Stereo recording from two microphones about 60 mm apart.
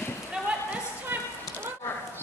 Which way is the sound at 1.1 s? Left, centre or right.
Right.